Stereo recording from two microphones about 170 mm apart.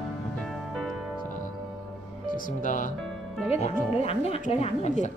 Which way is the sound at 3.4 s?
35° left (ahead or behind).